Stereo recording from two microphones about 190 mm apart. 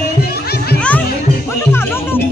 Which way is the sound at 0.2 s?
55° left (ahead or behind).